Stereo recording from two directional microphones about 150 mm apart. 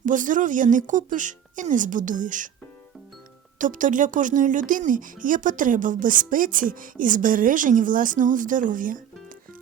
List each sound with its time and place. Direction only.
0.0 s speech: 60° right (ahead or behind)
3.6 s speech: 60° right (ahead or behind)